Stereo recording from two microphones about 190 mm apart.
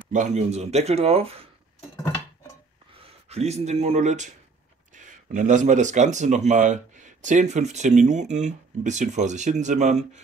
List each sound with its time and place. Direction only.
0.1 s speech: 40° right (ahead or behind)
3.3 s speech: 35° right (ahead or behind)